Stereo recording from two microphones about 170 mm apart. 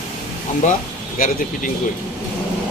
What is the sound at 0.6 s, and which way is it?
Speech, 45° left (ahead or behind).